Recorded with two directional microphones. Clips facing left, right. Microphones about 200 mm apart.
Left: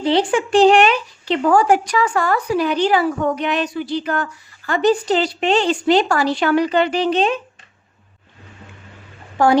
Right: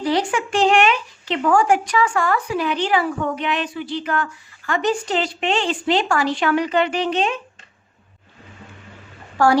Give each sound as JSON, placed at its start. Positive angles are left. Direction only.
{"t": 0.0, "sound": "speech", "side_deg": 30}
{"t": 9.4, "sound": "a woman's voice", "side_deg": 20}